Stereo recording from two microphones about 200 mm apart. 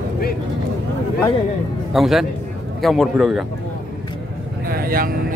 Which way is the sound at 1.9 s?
Centre (ahead or behind).